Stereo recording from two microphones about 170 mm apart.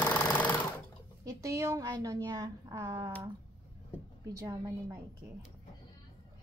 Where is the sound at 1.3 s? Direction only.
20° right (ahead or behind).